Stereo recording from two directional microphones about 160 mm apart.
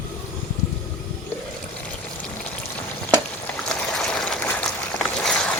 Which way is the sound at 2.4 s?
10° left (ahead or behind).